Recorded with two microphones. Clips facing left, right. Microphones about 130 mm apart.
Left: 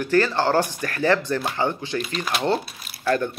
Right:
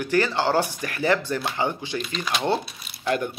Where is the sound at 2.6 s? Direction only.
Centre (ahead or behind).